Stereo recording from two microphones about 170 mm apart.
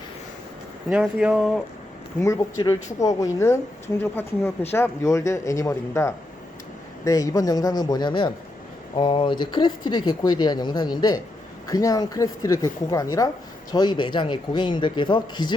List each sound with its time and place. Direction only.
0.9 s speech: 5° right (ahead or behind)
2.2 s a woman's voice: 20° left (ahead or behind)